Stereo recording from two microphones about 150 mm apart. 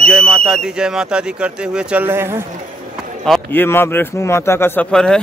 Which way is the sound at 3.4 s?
15° left (ahead or behind).